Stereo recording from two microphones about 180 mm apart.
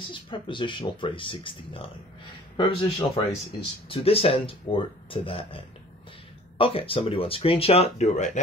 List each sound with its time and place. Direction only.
0.1 s speech: 25° left (ahead or behind)
6.6 s speech: 30° left (ahead or behind)